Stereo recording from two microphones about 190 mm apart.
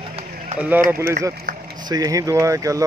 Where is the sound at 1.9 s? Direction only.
20° right (ahead or behind).